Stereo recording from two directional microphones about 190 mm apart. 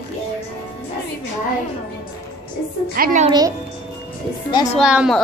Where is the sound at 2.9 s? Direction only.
50° right (ahead or behind).